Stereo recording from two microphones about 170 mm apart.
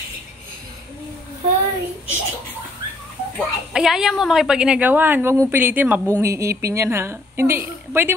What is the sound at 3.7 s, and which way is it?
A woman's voice, 5° right (ahead or behind).